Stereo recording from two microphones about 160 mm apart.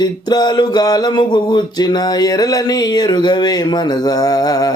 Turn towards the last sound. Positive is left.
turn(degrees=25)  # may be behind; listen again after turning